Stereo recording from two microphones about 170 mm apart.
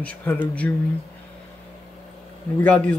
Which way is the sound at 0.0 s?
10° left (ahead or behind).